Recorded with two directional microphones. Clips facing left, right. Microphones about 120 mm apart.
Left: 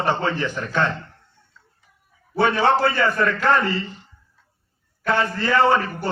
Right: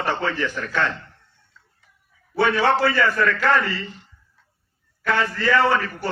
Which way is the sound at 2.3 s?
20° left (ahead or behind).